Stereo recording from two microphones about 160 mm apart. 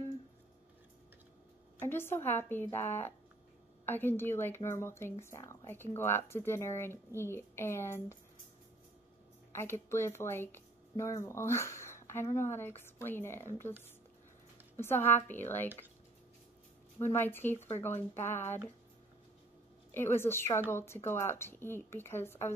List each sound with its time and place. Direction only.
1.9 s speech: 15° left (ahead or behind)
9.5 s a woman's voice: 15° left (ahead or behind)
14.8 s speech: 15° left (ahead or behind)
17.0 s speech: 15° left (ahead or behind)
19.9 s speech: 15° left (ahead or behind)